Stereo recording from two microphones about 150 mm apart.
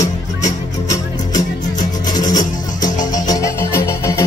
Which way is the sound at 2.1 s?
25° left (ahead or behind).